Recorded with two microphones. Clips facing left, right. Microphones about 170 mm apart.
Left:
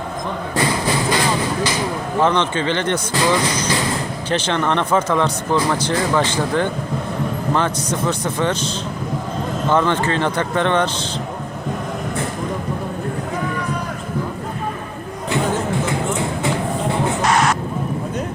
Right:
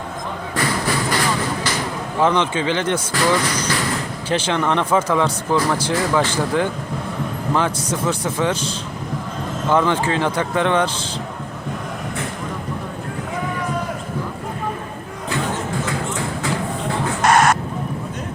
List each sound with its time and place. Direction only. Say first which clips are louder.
0.5 s a sound: left 2 dB; 20° left (ahead or behind)
2.2 s speech: right 1 dB; 10° right (ahead or behind)
3.2 s speech: left 1 dB; 15° left (ahead or behind)
4.3 s speech: even; 10° right (ahead or behind)
15.9 s music: left 3 dB; 25° left (ahead or behind)
17.2 s a sound: right 4 dB; 50° right (ahead or behind)